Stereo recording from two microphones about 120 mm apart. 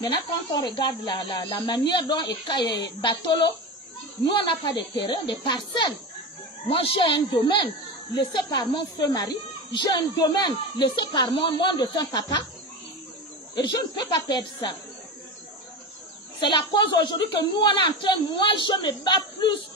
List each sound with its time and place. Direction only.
0.0 s a woman's voice: 35° left (ahead or behind)
6.7 s speech: 50° left (ahead or behind)
7.2 s a woman's voice: 40° left (ahead or behind)
13.6 s a woman's voice: 35° left (ahead or behind)
16.3 s a woman's voice: 40° left (ahead or behind)